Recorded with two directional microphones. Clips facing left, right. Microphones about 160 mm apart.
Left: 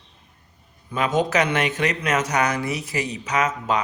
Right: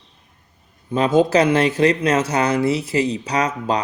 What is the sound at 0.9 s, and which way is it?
Speech, 30° right (ahead or behind).